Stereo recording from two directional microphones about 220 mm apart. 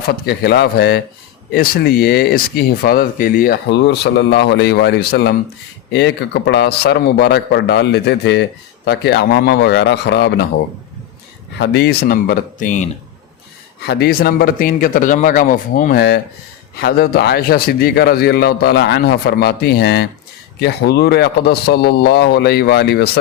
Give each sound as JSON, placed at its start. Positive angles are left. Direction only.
{"t": 0.3, "sound": "a man's voice", "side_deg": 50}
{"t": 11.6, "sound": "a man's voice", "side_deg": 50}
{"t": 13.8, "sound": "a man's voice", "side_deg": 45}